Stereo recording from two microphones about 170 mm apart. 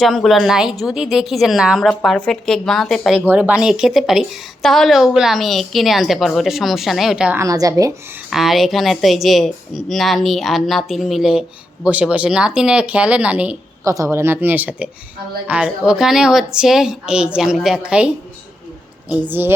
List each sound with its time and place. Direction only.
0.0 s a woman's voice: centre (ahead or behind)
3.2 s a woman's voice: 10° right (ahead or behind)
7.3 s a woman's voice: 20° right (ahead or behind)
8.3 s a woman's voice: centre (ahead or behind)
13.8 s a woman's voice: 20° right (ahead or behind)